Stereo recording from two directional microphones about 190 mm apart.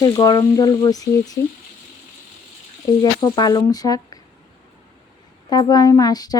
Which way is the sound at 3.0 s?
20° left (ahead or behind).